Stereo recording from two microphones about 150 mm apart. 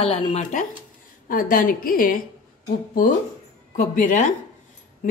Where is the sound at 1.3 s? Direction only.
65° left (ahead or behind).